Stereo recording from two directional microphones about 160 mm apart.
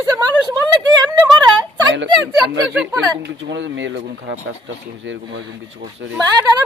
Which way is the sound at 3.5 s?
90° right.